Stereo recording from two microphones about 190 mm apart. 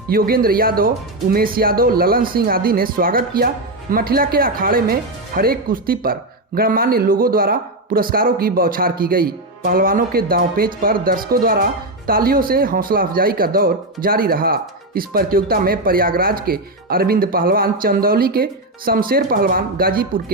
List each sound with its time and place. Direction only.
0.1 s speech: 50° right (ahead or behind)